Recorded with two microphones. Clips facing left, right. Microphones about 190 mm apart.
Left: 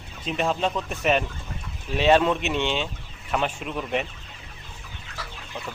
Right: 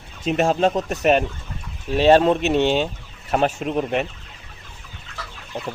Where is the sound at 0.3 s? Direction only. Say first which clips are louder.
Right 7 dB; 45° right (ahead or behind).